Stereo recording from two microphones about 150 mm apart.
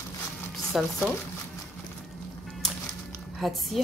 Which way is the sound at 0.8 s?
5° right (ahead or behind).